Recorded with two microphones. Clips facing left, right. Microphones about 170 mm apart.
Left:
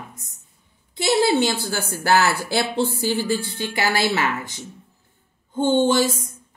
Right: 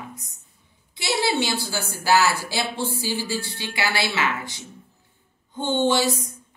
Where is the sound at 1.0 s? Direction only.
50° left (ahead or behind).